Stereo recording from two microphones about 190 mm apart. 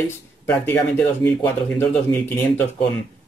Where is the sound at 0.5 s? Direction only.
10° left (ahead or behind).